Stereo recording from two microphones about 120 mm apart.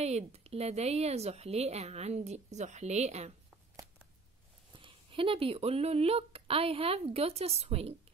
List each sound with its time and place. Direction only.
0.0 s a woman's voice: 65° right (ahead or behind)
4.7 s a woman's voice: 50° right (ahead or behind)